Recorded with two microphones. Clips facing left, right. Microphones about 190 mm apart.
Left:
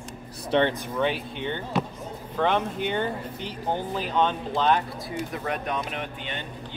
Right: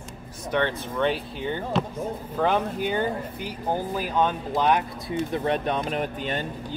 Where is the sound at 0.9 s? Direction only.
Centre (ahead or behind).